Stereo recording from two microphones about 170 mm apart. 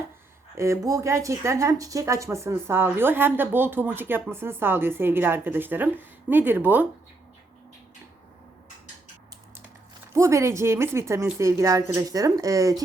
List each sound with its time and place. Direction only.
0.5 s speech: 15° right (ahead or behind)
10.1 s speech: 15° right (ahead or behind)